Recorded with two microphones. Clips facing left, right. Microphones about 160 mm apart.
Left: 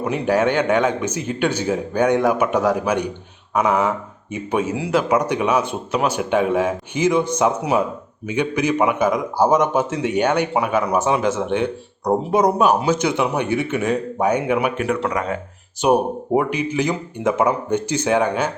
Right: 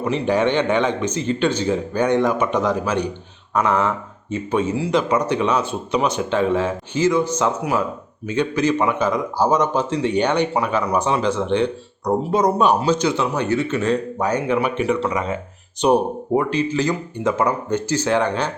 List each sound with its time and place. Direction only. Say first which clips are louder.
0.0 s speech: even; 10° left (ahead or behind)
15.1 s speech: even; centre (ahead or behind)